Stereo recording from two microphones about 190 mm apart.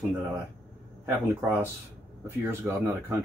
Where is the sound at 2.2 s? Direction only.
10° right (ahead or behind).